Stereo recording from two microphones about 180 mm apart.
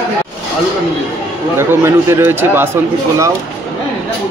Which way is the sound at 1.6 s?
15° right (ahead or behind).